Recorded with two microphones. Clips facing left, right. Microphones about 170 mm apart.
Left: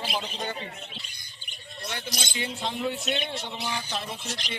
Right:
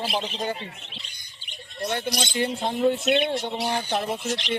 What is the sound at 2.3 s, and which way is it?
Speech, 50° right (ahead or behind).